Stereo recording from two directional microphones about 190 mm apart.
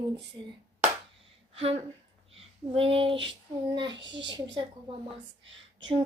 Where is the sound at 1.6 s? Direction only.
30° right (ahead or behind).